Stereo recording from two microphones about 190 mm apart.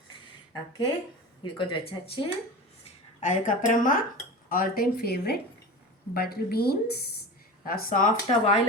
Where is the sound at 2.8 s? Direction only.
40° left (ahead or behind).